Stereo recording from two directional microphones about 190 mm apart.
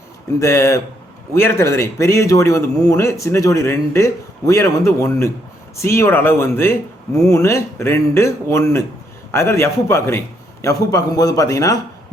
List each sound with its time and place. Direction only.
0.3 s speech: 15° left (ahead or behind)